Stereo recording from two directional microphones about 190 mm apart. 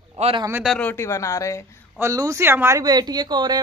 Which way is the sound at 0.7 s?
5° left (ahead or behind).